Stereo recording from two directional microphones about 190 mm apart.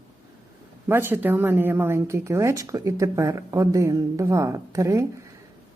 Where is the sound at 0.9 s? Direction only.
10° right (ahead or behind).